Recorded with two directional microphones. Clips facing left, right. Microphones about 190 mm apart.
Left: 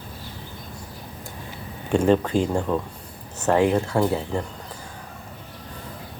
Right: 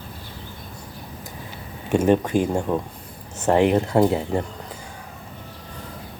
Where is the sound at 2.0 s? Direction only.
10° right (ahead or behind).